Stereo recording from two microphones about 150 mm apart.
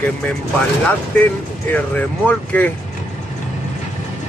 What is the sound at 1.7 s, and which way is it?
Speech, 10° left (ahead or behind).